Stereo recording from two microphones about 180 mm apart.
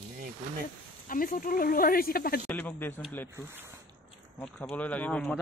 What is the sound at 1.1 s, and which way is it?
Speech, 50° left (ahead or behind).